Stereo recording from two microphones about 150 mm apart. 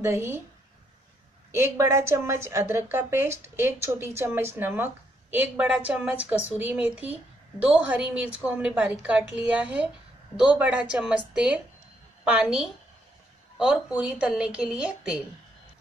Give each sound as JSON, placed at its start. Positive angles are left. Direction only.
{"t": 0.0, "sound": "a woman's voice", "side_deg": -15}
{"t": 1.5, "sound": "a woman's voice", "side_deg": -20}